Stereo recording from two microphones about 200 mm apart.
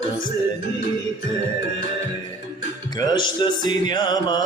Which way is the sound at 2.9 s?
20° left (ahead or behind).